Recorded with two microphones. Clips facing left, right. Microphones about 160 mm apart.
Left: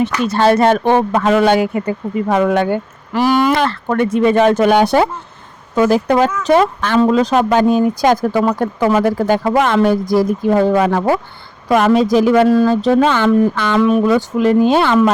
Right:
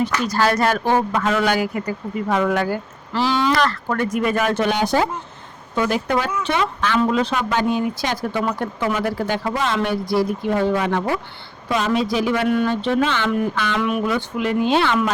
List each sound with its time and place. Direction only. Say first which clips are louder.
0.0 s speech: left 6 dB; 25° left (ahead or behind)
3.5 s speech: left 4 dB; 25° left (ahead or behind)
4.5 s speech: left 7 dB; 55° left (ahead or behind)
5.7 s speech: left 8 dB; 40° left (ahead or behind)
9.5 s speech: left 9 dB; 60° left (ahead or behind)
9.8 s speech: left 7 dB; 45° left (ahead or behind)
11.7 s speech: left 9 dB; 55° left (ahead or behind)
11.9 s speech: left 9 dB; 45° left (ahead or behind)